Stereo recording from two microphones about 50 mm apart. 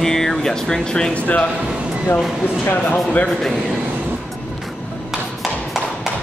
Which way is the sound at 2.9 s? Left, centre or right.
Left.